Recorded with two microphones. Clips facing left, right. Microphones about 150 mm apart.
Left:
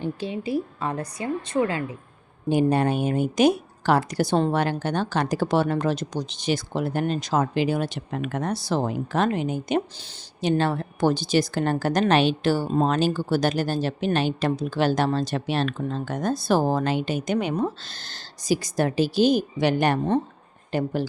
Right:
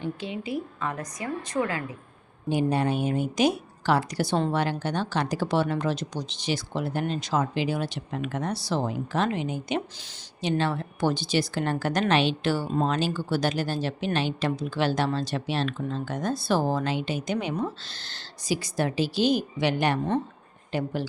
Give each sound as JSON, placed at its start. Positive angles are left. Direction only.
{"t": 0.0, "sound": "a woman's voice", "side_deg": 35}
{"t": 2.5, "sound": "a woman's voice", "side_deg": 50}